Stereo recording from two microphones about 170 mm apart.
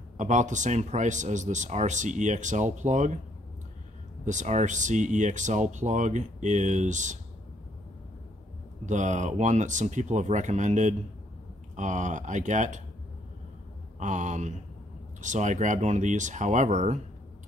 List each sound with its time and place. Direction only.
0.2 s speech: 45° right (ahead or behind)
4.2 s speech: 45° right (ahead or behind)
8.8 s speech: 45° right (ahead or behind)
13.9 s speech: 45° right (ahead or behind)